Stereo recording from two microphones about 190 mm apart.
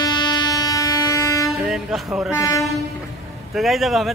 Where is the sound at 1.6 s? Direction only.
5° right (ahead or behind).